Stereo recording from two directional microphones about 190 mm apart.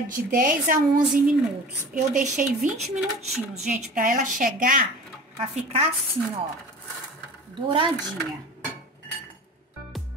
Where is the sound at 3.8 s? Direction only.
45° right (ahead or behind).